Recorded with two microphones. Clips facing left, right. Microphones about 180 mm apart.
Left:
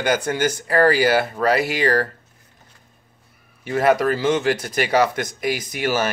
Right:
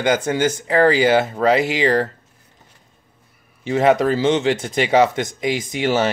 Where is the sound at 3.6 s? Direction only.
25° right (ahead or behind).